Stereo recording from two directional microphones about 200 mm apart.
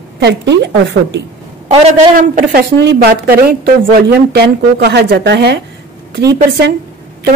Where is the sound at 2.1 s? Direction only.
45° right (ahead or behind).